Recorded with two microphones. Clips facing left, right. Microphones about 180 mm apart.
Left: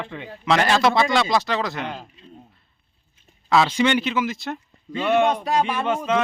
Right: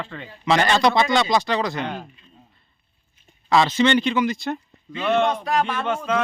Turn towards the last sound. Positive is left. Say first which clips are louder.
# left 1 dB
turn(degrees=5)  # may be behind; listen again after turning